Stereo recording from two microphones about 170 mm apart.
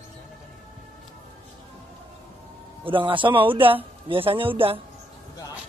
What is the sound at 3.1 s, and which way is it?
A woman's voice, 30° right (ahead or behind).